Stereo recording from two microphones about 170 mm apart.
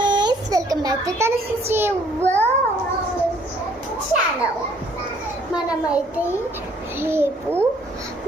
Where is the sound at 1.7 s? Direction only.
15° right (ahead or behind).